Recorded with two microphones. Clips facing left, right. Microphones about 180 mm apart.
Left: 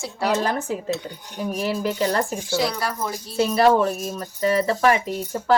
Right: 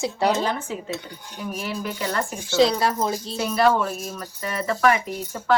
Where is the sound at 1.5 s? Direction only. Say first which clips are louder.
Left 5 dB; 35° left (ahead or behind).